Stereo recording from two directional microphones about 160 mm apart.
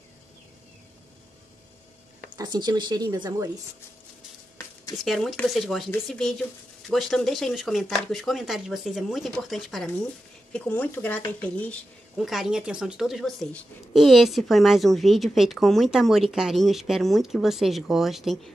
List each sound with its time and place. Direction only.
2.3 s speech: 25° right (ahead or behind)
5.0 s speech: centre (ahead or behind)
12.2 s speech: centre (ahead or behind)